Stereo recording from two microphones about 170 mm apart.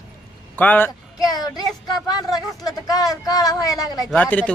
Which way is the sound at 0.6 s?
10° left (ahead or behind).